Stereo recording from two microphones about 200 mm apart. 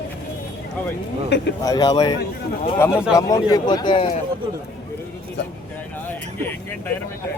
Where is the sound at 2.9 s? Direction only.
5° right (ahead or behind).